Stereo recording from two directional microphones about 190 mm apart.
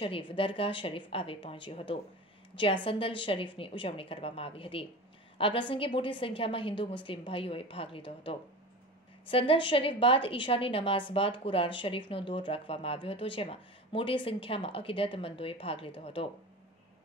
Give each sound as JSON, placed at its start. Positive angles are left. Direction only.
{"t": 0.0, "sound": "a woman's voice", "side_deg": 30}